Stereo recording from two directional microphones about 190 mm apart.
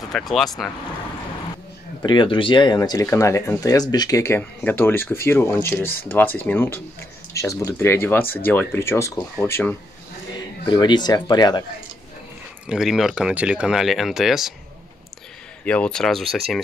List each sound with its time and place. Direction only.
0.1 s speech: centre (ahead or behind)
2.0 s speech: 25° left (ahead or behind); by 9.8 s 10° left (ahead or behind)
10.3 s speech: 20° left (ahead or behind)
12.6 s speech: 5° right (ahead or behind)
15.6 s speech: 5° left (ahead or behind)